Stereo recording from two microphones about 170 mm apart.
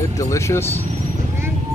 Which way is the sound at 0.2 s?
15° left (ahead or behind).